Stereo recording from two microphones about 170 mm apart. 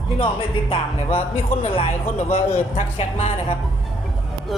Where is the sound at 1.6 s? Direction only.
35° left (ahead or behind).